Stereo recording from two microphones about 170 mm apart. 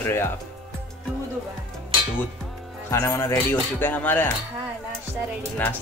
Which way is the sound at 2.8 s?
20° left (ahead or behind).